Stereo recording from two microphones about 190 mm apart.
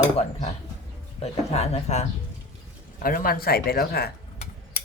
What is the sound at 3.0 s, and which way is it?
Speech, 50° left (ahead or behind).